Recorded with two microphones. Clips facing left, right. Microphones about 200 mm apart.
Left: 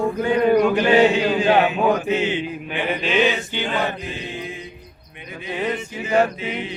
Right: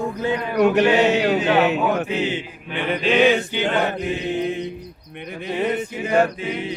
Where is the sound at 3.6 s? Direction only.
65° right (ahead or behind).